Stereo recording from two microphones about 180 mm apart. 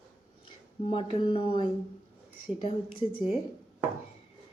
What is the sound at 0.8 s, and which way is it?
Speech, 30° left (ahead or behind).